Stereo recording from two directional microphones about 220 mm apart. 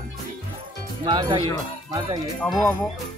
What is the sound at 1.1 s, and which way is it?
Speech, 20° right (ahead or behind).